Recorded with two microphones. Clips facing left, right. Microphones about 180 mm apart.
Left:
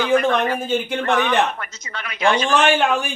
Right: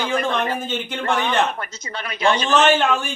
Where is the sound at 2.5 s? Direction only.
10° left (ahead or behind).